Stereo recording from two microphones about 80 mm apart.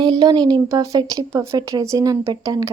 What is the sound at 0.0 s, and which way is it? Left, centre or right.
Speech, right.